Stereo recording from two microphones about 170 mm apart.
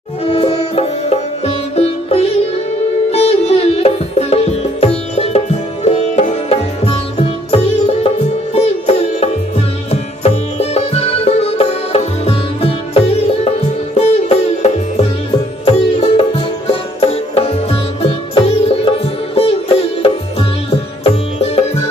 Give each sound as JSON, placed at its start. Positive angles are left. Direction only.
{"t": 0.2, "sound": "music", "side_deg": 35}